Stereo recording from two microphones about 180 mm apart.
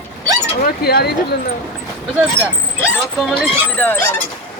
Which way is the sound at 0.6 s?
60° left (ahead or behind).